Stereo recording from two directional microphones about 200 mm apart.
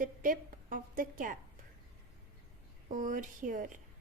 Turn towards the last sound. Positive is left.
turn(degrees=-40)  # may be behind; listen again after turning